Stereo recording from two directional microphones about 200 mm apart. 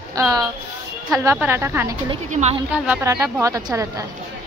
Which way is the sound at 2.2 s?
35° right (ahead or behind).